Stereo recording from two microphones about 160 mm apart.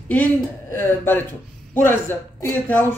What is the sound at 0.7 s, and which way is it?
A man's voice, 15° left (ahead or behind).